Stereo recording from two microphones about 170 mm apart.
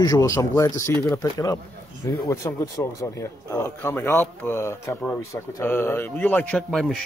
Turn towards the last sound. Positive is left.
turn(degrees=5)  # may be behind; listen again after turning